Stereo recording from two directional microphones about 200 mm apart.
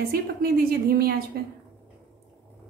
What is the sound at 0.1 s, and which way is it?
A woman's voice, 50° right (ahead or behind).